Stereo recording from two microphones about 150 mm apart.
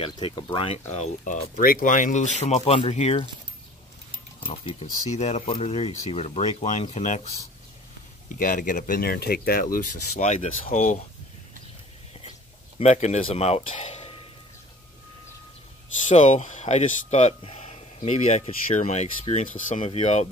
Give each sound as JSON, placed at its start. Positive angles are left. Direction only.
{"t": 0.0, "sound": "speech", "side_deg": 35}
{"t": 1.6, "sound": "speech", "side_deg": 65}
{"t": 4.6, "sound": "speech", "side_deg": 45}
{"t": 8.3, "sound": "speech", "side_deg": 60}
{"t": 12.7, "sound": "speech", "side_deg": 45}
{"t": 16.1, "sound": "speech", "side_deg": 55}